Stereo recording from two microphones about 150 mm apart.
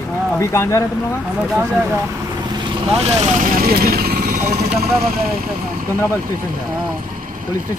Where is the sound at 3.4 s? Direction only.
80° right.